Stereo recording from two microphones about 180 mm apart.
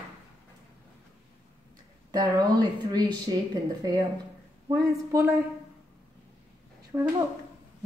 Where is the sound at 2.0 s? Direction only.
20° right (ahead or behind).